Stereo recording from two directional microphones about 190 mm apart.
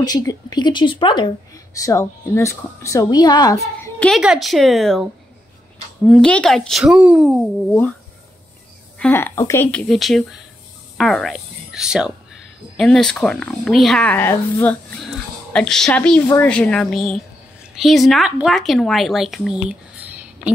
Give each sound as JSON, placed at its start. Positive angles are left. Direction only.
{"t": 0.0, "sound": "speech", "side_deg": 20}
{"t": 4.0, "sound": "speech", "side_deg": 0}
{"t": 8.9, "sound": "speech", "side_deg": 10}